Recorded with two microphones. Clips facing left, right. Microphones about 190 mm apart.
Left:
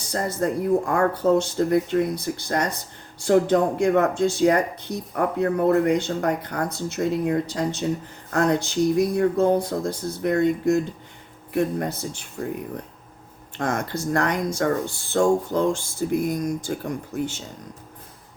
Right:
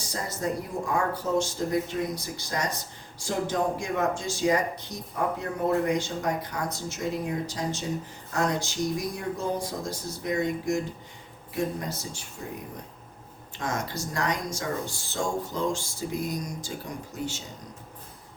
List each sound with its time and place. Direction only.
0.1 s speech: 55° left (ahead or behind)
13.6 s speech: 55° left (ahead or behind)